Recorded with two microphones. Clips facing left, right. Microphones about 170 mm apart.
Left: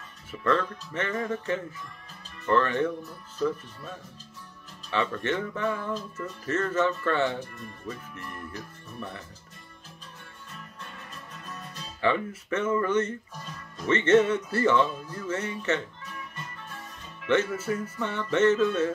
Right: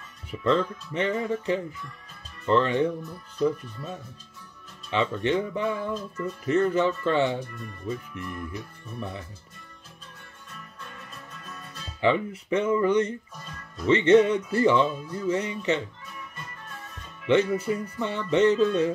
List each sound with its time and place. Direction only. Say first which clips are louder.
0.3 s speech: right 2 dB; 20° right (ahead or behind)
4.9 s speech: right 3 dB; 20° right (ahead or behind)
12.0 s speech: right 3 dB; 15° right (ahead or behind)
17.3 s speech: right 3 dB; 15° right (ahead or behind)